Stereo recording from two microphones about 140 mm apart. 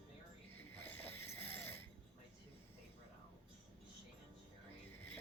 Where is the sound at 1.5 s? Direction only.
15° left (ahead or behind).